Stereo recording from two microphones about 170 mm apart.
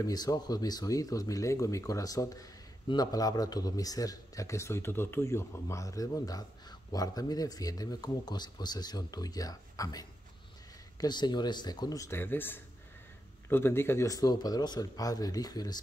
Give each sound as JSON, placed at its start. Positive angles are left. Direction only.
{"t": 0.0, "sound": "speech", "side_deg": 20}